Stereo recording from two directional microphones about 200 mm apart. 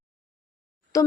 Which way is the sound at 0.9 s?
15° left (ahead or behind).